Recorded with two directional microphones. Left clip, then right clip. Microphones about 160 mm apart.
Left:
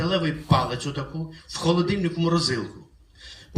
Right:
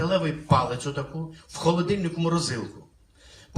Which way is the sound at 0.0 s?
50° right (ahead or behind).